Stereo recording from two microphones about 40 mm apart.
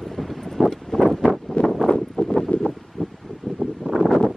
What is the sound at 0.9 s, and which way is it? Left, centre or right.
Wind, centre.